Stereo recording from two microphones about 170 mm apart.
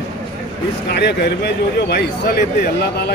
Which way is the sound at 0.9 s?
75° left (ahead or behind).